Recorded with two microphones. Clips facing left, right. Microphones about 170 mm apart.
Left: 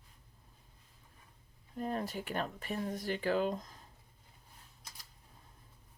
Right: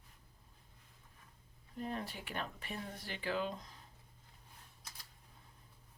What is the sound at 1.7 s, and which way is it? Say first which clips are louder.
Speech: left 5 dB; 45° left (ahead or behind).